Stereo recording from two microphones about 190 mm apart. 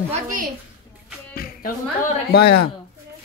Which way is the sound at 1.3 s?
50° left (ahead or behind).